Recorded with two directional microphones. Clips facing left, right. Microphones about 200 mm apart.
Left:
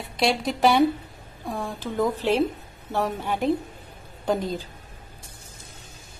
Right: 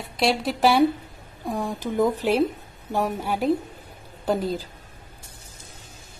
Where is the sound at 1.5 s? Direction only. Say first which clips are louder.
Right 3 dB; 15° right (ahead or behind).